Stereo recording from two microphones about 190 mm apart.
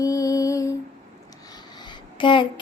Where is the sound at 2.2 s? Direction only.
25° left (ahead or behind).